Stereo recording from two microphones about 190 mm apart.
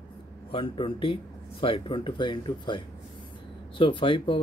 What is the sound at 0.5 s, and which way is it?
Speech, 30° left (ahead or behind).